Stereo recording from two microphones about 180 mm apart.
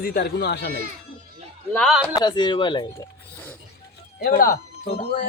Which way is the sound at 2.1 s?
25° left (ahead or behind).